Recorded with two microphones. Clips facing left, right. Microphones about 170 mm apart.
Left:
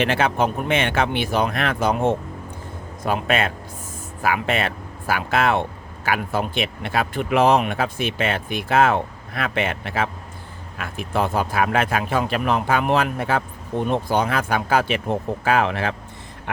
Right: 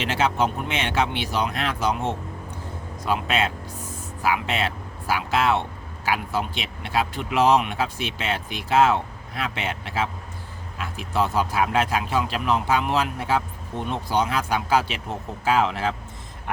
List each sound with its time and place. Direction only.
0.0 s speech: 55° left (ahead or behind)